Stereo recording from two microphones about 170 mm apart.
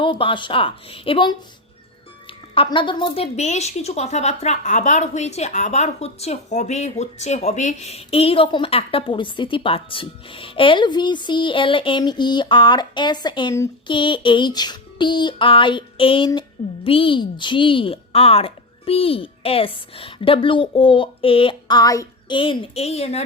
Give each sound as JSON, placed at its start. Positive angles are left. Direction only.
{"t": 0.0, "sound": "a woman's voice", "side_deg": 30}
{"t": 2.6, "sound": "a woman's voice", "side_deg": 30}
{"t": 13.8, "sound": "a sound", "side_deg": 30}
{"t": 16.8, "sound": "a woman's voice", "side_deg": 30}